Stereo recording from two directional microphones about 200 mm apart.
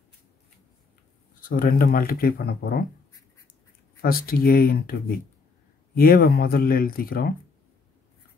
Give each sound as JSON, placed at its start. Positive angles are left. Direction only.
{"t": 1.4, "sound": "speech", "side_deg": 45}
{"t": 4.0, "sound": "speech", "side_deg": 50}